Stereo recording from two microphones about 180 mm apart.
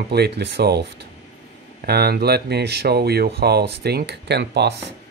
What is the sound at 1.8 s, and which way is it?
Speech, 60° right (ahead or behind).